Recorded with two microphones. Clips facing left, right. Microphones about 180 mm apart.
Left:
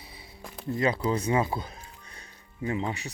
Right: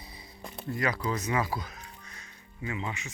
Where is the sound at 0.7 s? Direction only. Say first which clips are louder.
Left 5 dB; 25° left (ahead or behind).